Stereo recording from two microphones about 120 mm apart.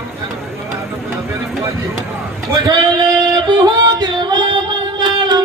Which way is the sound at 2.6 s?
35° right (ahead or behind).